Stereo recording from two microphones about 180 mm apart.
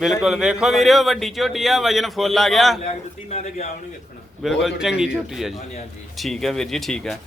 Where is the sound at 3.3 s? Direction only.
40° left (ahead or behind).